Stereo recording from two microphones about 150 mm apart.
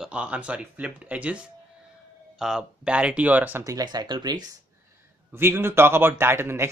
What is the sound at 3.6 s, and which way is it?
Speech, 25° right (ahead or behind).